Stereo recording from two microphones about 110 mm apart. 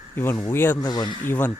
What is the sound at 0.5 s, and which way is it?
Speech, 20° left (ahead or behind).